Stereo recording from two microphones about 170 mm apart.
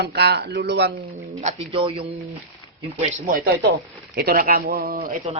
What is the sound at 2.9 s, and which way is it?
Speech, 45° right (ahead or behind).